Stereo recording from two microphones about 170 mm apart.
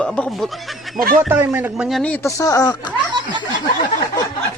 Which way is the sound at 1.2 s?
10° right (ahead or behind).